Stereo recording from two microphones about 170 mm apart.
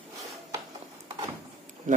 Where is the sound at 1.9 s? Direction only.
45° right (ahead or behind).